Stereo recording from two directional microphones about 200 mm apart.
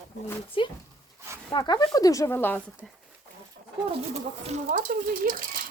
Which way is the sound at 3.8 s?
30° right (ahead or behind).